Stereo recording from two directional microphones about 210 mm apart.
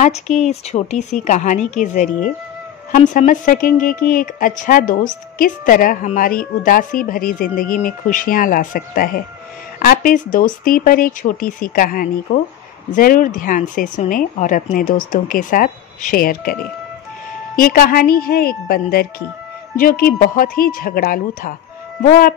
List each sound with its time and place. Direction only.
0.0 s speech: 35° left (ahead or behind)
17.6 s speech: 45° left (ahead or behind)